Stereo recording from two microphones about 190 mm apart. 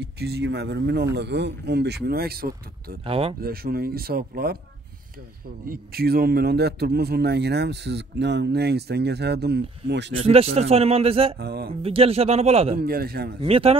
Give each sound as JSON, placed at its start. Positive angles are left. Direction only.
{"t": 0.0, "sound": "a man's voice", "side_deg": -60}
{"t": 3.1, "sound": "speech", "side_deg": -30}
{"t": 3.3, "sound": "speech", "side_deg": -55}
{"t": 5.7, "sound": "a man's voice", "side_deg": -55}
{"t": 10.2, "sound": "a man's voice", "side_deg": -30}
{"t": 11.3, "sound": "a man's voice", "side_deg": -55}
{"t": 11.8, "sound": "a man's voice", "side_deg": -30}
{"t": 12.7, "sound": "speech", "side_deg": -50}
{"t": 13.4, "sound": "a man's voice", "side_deg": -30}